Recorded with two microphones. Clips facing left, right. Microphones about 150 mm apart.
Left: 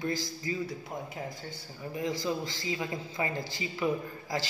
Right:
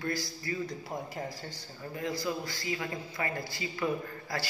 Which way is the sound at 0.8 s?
Centre (ahead or behind).